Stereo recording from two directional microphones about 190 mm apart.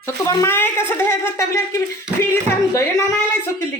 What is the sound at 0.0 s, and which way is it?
Speech, 15° left (ahead or behind).